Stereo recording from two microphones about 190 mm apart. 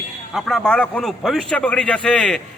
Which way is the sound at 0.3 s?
Centre (ahead or behind).